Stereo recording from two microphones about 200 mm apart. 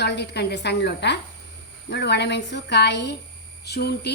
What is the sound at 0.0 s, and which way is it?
A woman's voice, 55° left (ahead or behind).